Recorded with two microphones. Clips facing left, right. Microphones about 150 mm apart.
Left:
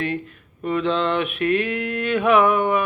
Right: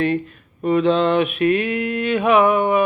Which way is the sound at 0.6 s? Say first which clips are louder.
Right 5 dB; 20° right (ahead or behind).